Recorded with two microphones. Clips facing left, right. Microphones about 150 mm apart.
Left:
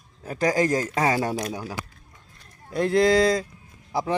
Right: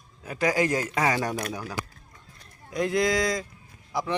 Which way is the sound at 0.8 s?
30° left (ahead or behind).